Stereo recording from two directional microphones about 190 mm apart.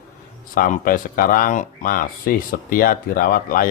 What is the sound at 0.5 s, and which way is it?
Speech, 45° left (ahead or behind).